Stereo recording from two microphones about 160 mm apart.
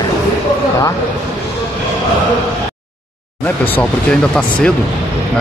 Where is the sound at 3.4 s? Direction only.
10° left (ahead or behind).